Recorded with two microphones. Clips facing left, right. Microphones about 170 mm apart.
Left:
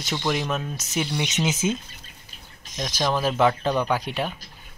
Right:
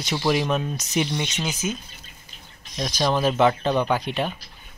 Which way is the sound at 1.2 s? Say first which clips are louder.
Left 4 dB; 20° left (ahead or behind).